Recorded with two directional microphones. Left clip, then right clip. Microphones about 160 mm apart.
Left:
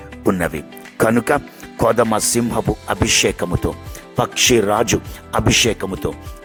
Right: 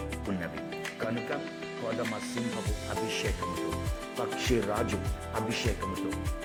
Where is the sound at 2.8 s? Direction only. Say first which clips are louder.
Left 15 dB; 55° left (ahead or behind).